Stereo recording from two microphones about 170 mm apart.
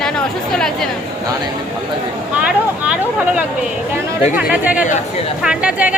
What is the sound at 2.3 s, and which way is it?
Speech, 5° right (ahead or behind).